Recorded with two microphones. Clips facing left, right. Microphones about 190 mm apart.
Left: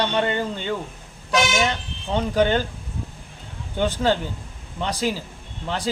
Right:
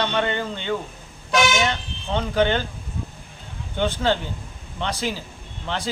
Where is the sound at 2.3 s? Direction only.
40° left (ahead or behind).